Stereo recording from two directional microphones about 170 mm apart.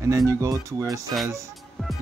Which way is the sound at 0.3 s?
20° right (ahead or behind).